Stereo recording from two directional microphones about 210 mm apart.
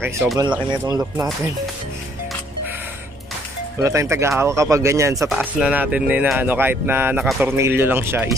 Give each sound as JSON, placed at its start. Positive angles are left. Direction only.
{"t": 0.9, "sound": "speech", "side_deg": -15}
{"t": 3.8, "sound": "speech", "side_deg": -15}